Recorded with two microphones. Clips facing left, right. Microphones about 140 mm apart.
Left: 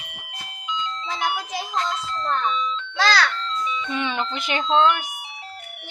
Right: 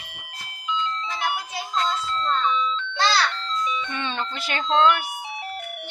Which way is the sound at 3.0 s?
90° left.